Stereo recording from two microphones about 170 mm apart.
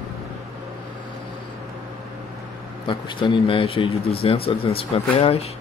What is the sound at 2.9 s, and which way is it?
Speech, 30° left (ahead or behind).